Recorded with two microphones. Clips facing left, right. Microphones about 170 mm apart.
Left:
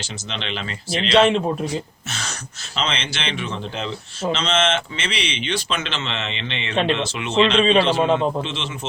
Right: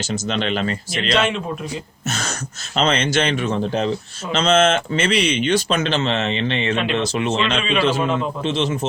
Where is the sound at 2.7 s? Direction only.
45° right (ahead or behind).